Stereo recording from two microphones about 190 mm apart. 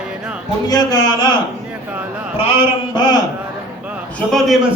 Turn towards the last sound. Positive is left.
turn(degrees=0)  # may be behind; listen again after turning